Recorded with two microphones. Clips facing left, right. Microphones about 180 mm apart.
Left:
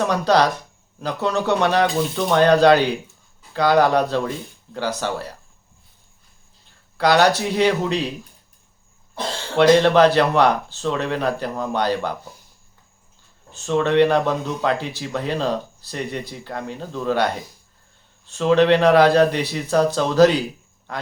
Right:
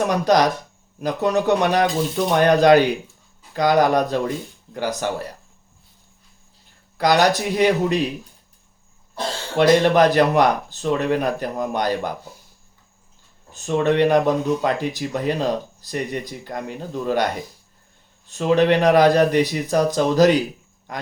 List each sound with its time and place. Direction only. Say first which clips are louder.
0.0 s speech: even; 15° right (ahead or behind)
7.0 s speech: left 1 dB; 15° right (ahead or behind)
9.6 s speech: left 1 dB; 15° right (ahead or behind)
14.0 s speech: right 1 dB; 15° right (ahead or behind)
18.3 s speech: left 1 dB; 10° right (ahead or behind)